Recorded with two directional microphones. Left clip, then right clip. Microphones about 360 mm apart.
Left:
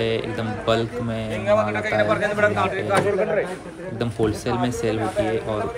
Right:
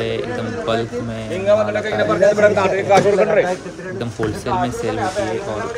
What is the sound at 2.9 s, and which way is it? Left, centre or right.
Speech, right.